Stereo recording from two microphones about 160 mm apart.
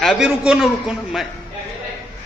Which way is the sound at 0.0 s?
Centre (ahead or behind).